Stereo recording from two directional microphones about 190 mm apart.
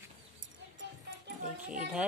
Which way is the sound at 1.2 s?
45° right (ahead or behind).